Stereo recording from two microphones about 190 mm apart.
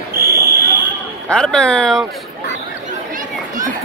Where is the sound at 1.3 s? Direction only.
5° left (ahead or behind).